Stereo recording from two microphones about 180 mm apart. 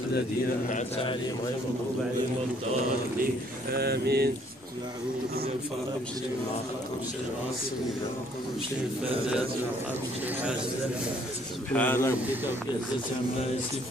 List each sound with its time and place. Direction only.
0.7 s a man's voice: 40° left (ahead or behind)
3.7 s speech: 65° right (ahead or behind)
11.7 s a man's voice: 10° left (ahead or behind)